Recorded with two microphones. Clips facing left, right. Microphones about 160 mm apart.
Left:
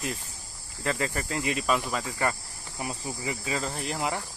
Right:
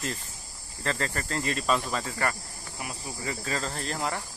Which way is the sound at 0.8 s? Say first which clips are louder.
Left 1 dB; 10° left (ahead or behind).